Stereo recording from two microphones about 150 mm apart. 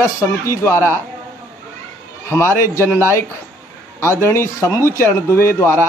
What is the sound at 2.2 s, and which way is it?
Speech, 15° left (ahead or behind).